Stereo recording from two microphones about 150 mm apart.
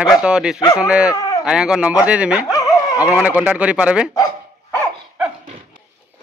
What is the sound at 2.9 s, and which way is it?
Speech, 10° right (ahead or behind).